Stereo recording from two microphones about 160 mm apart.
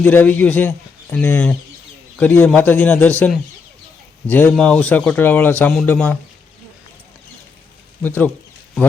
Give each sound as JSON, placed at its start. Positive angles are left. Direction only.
{"t": 0.0, "sound": "a man's voice", "side_deg": 10}
{"t": 8.0, "sound": "speech", "side_deg": 10}